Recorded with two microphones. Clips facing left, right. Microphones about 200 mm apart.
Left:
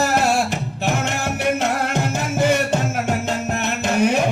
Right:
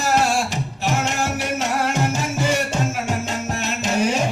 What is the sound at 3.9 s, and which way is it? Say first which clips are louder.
Music: left 3 dB; 60° left (ahead or behind).